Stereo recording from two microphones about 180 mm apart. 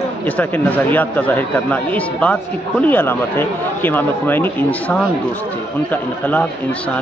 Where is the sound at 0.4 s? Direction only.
10° left (ahead or behind).